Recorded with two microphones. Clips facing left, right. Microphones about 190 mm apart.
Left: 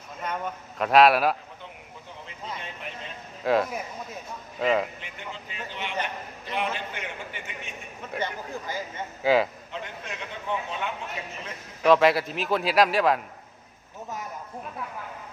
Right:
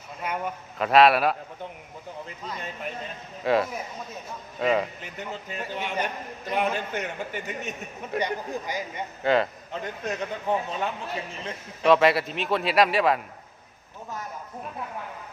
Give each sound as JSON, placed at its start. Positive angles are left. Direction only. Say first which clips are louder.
{"t": 0.2, "sound": "a man's voice", "louder": "right 1 dB", "side_deg": -10}
{"t": 3.4, "sound": "a man's voice", "louder": "even", "side_deg": 0}
{"t": 4.9, "sound": "a man's voice", "louder": "right 4 dB", "side_deg": -40}
{"t": 8.2, "sound": "speech", "louder": "right 2 dB", "side_deg": -15}
{"t": 9.2, "sound": "a man's voice", "louder": "left 1 dB", "side_deg": 5}
{"t": 9.7, "sound": "speech", "louder": "right 7 dB", "side_deg": -40}
{"t": 11.8, "sound": "a man's voice", "louder": "even", "side_deg": 0}